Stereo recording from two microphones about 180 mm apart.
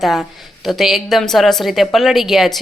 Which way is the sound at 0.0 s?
Centre (ahead or behind).